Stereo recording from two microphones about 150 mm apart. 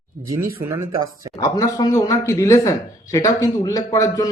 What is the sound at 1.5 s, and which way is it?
Speech, 25° left (ahead or behind).